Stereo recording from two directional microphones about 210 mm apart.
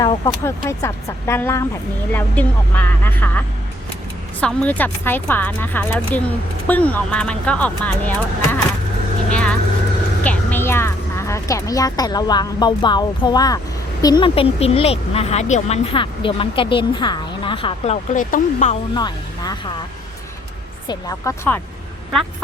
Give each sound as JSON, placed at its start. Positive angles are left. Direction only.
{"t": 0.0, "sound": "speech", "side_deg": 15}
{"t": 9.3, "sound": "vehicle", "side_deg": 5}
{"t": 10.2, "sound": "speech", "side_deg": 10}
{"t": 18.1, "sound": "speech", "side_deg": 40}
{"t": 18.9, "sound": "speech", "side_deg": 20}
{"t": 20.8, "sound": "speech", "side_deg": 20}